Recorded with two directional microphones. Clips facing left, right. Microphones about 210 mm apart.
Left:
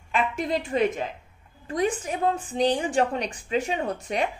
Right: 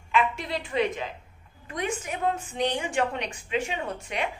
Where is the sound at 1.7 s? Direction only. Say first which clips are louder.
Left 5 dB; 35° left (ahead or behind).